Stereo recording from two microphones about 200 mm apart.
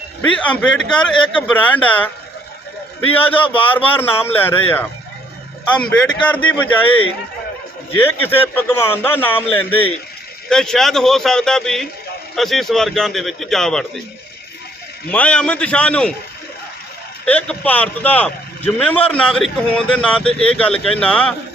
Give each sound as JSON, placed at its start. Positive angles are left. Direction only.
{"t": 0.2, "sound": "speech", "side_deg": 5}
{"t": 3.2, "sound": "speech", "side_deg": 10}
{"t": 7.9, "sound": "speech", "side_deg": 10}
{"t": 15.1, "sound": "speech", "side_deg": 5}
{"t": 17.2, "sound": "speech", "side_deg": 5}